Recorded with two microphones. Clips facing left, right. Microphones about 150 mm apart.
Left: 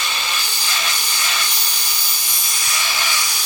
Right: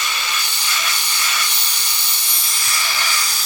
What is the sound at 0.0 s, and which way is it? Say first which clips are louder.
Hiss: even; 25° left (ahead or behind).